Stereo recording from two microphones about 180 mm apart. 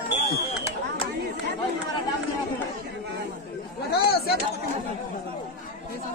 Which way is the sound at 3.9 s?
60° left (ahead or behind).